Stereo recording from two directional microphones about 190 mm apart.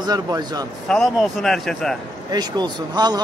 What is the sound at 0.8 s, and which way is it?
Speech, centre (ahead or behind).